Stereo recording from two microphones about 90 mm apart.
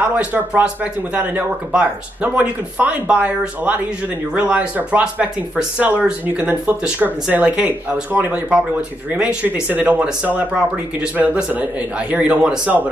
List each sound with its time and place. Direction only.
0.0 s speech: 15° right (ahead or behind)